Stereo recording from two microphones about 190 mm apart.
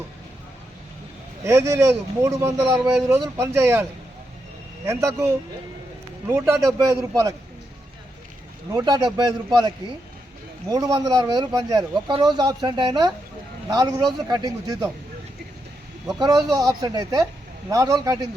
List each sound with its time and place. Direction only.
1.5 s speech: 15° right (ahead or behind)
4.9 s speech: 15° right (ahead or behind)
8.7 s speech: 20° right (ahead or behind)
16.1 s speech: 20° right (ahead or behind)